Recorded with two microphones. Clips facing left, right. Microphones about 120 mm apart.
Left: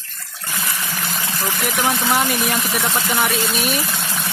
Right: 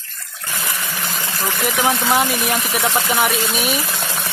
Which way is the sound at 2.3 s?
Centre (ahead or behind).